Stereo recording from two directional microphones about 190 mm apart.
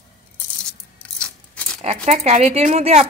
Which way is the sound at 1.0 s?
5° left (ahead or behind).